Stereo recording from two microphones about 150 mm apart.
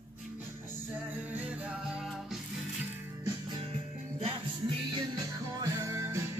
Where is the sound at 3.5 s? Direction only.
40° right (ahead or behind).